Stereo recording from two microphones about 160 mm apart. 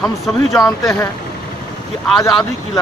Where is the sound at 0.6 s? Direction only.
20° left (ahead or behind).